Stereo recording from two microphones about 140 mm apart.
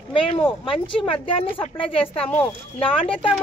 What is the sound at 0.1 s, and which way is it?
Speech, 40° left (ahead or behind).